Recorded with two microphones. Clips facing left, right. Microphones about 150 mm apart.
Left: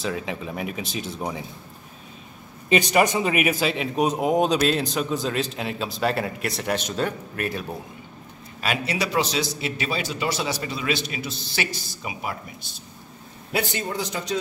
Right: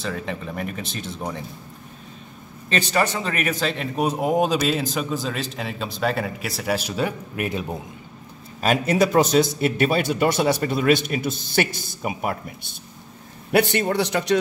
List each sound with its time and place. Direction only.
0.0 s a man's voice: 5° left (ahead or behind)
2.7 s a man's voice: 15° left (ahead or behind); by 7.6 s 15° right (ahead or behind)
8.5 s a man's voice: 45° right (ahead or behind)
13.5 s a man's voice: 65° right (ahead or behind)